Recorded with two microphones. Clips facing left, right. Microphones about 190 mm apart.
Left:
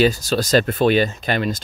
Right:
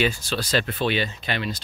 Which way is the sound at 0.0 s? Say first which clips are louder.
Left 7 dB; 40° left (ahead or behind).